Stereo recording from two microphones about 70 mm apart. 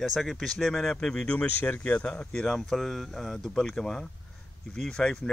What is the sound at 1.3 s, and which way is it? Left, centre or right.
Speech, left.